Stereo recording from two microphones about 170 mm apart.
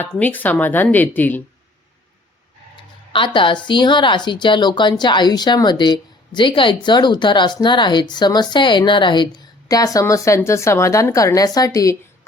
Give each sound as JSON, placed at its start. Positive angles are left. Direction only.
{"t": 0.0, "sound": "speech", "side_deg": 10}
{"t": 3.1, "sound": "speech", "side_deg": 30}